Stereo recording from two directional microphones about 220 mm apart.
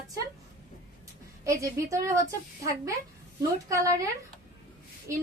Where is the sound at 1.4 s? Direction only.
15° right (ahead or behind).